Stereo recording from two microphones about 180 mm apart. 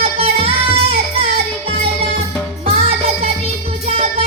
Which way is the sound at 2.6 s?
35° right (ahead or behind).